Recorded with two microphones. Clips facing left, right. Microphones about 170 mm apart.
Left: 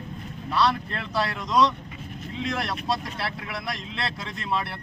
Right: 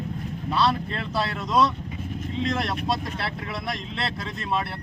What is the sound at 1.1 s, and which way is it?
Speech, 5° right (ahead or behind).